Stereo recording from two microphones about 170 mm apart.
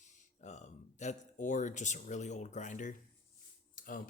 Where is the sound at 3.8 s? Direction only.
55° left (ahead or behind).